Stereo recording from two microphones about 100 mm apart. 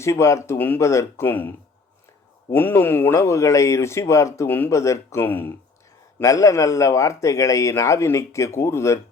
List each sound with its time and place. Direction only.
0.0 s speech: 30° left (ahead or behind)
6.1 s a man's voice: 30° left (ahead or behind)